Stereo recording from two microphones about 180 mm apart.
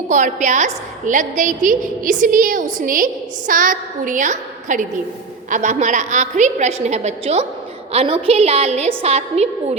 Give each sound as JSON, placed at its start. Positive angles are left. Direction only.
{"t": 0.1, "sound": "a woman's voice", "side_deg": -45}